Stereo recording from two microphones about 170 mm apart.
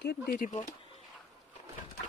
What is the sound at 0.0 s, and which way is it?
Speech, 65° left (ahead or behind).